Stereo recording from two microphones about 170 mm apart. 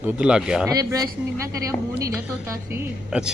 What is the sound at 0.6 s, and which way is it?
A woman's voice, 20° right (ahead or behind).